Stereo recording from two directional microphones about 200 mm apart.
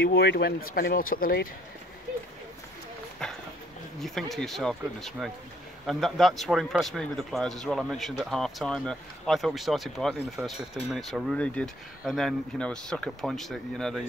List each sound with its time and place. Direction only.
0.0 s speech: 50° left (ahead or behind)
4.0 s speech: centre (ahead or behind)